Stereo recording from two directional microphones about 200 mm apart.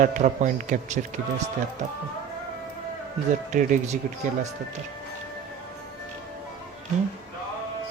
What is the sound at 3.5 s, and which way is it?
Speech, 40° right (ahead or behind).